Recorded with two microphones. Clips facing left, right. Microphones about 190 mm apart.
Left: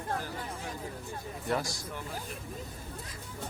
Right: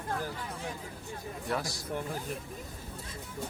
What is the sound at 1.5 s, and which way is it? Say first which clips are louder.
Speech: left 2 dB; centre (ahead or behind).